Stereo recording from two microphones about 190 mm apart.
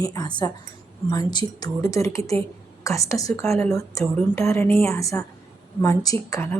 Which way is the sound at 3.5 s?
Centre (ahead or behind).